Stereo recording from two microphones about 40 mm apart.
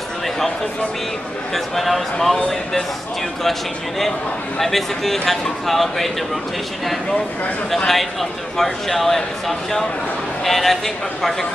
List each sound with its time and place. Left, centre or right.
1.5 s speech: centre
4.6 s speech: centre
7.7 s speech: centre